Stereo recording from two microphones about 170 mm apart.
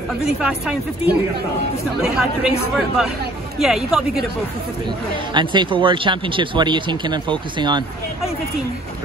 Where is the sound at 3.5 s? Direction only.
Centre (ahead or behind).